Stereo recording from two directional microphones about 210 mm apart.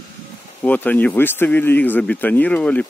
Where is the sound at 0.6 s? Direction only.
10° left (ahead or behind).